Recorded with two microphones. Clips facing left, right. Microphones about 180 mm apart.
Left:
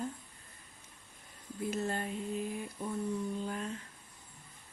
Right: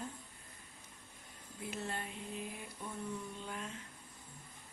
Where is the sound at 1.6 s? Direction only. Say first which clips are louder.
Left 7 dB; 45° left (ahead or behind).